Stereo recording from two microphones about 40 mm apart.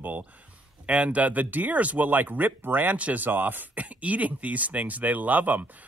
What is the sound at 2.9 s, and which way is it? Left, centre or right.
Speech, right.